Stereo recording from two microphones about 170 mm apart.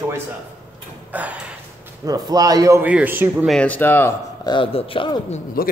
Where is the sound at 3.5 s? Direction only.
5° left (ahead or behind).